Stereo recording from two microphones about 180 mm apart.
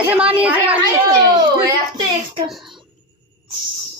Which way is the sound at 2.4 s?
Centre (ahead or behind).